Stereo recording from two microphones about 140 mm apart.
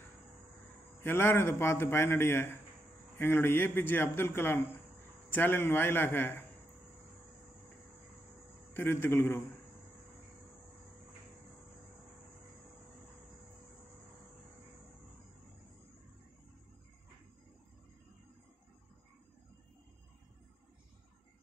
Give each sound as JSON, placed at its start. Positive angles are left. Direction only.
{"t": 1.0, "sound": "a man's voice", "side_deg": 15}
{"t": 8.7, "sound": "a man's voice", "side_deg": 15}